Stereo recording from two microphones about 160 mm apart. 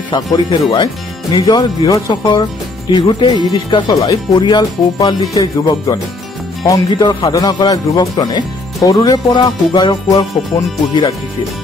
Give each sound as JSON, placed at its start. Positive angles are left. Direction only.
{"t": 0.1, "sound": "speech", "side_deg": 30}